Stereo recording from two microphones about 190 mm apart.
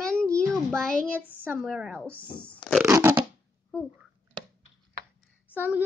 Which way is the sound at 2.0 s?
5° left (ahead or behind).